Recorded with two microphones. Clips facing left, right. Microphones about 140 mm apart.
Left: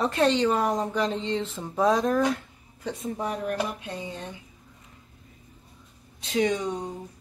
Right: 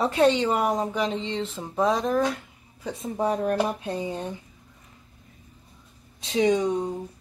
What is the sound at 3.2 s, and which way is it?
Speech, 30° right (ahead or behind).